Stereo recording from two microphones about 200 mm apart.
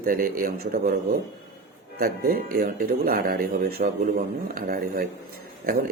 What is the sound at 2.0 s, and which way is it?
A man's voice, 50° right (ahead or behind).